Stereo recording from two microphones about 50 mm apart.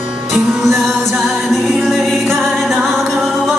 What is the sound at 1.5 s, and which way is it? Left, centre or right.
Music, centre.